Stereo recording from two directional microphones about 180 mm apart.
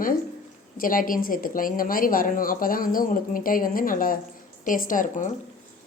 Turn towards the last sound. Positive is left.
turn(degrees=45)  # may be behind; listen again after turning